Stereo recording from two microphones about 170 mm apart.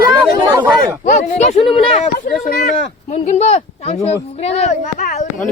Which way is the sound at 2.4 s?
55° left (ahead or behind).